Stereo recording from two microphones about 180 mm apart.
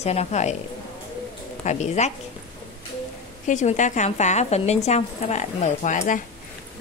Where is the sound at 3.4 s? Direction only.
40° left (ahead or behind).